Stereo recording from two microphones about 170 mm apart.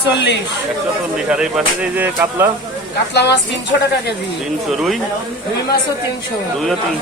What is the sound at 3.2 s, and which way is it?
Speech, 90° left.